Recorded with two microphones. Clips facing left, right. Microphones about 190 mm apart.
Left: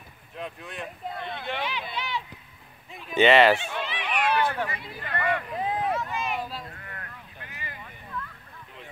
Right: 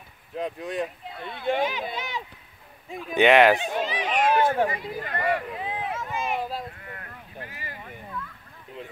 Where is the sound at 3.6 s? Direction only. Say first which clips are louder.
Right 5 dB; 40° right (ahead or behind).